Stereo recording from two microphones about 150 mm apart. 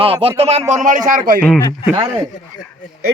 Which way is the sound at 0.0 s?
40° right (ahead or behind).